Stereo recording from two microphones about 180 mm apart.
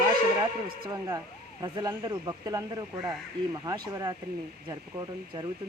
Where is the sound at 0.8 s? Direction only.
20° right (ahead or behind).